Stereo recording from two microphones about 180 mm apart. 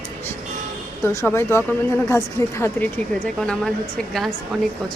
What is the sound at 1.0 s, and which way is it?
Speech, 15° left (ahead or behind).